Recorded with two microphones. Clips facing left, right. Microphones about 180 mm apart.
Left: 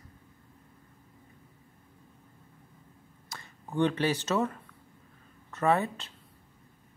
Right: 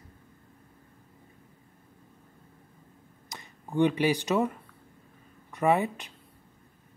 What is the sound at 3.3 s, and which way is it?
Speech, 15° right (ahead or behind).